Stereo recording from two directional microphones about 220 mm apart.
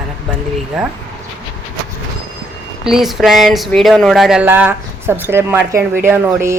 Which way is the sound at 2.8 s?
Centre (ahead or behind).